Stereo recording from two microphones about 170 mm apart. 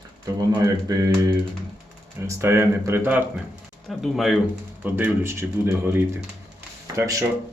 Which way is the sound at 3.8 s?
Centre (ahead or behind).